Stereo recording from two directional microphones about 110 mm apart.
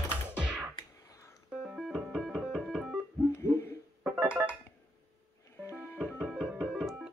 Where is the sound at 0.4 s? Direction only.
10° right (ahead or behind).